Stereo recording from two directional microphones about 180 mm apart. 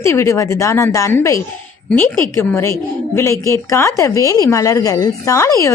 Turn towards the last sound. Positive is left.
turn(degrees=15)  # may be behind; listen again after turning